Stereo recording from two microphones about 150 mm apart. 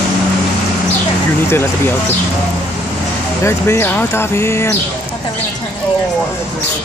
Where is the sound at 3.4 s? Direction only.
15° left (ahead or behind).